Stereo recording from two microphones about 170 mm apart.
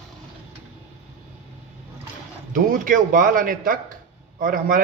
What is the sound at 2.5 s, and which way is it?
A man's voice, 50° right (ahead or behind).